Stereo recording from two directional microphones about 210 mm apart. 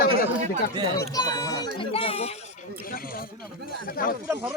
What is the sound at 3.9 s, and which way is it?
Speech, 40° left (ahead or behind).